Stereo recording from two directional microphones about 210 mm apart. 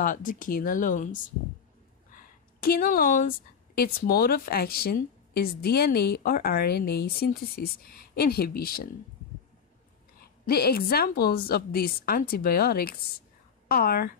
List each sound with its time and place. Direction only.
0.0 s a woman's voice: 40° left (ahead or behind)
10.2 s a woman's voice: 50° left (ahead or behind)